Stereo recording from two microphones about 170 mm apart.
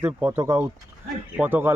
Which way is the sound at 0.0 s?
15° right (ahead or behind).